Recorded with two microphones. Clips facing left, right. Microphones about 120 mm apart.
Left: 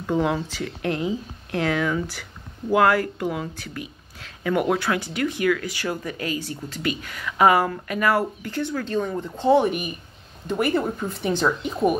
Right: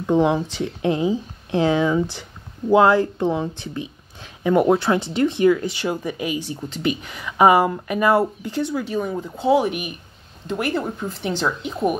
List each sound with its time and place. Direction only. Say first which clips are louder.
0.0 s speech: right 5 dB; 20° right (ahead or behind); by 12.0 s centre (ahead or behind)